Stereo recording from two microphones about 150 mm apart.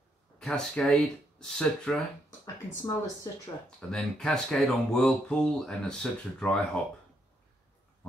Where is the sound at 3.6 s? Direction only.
5° left (ahead or behind).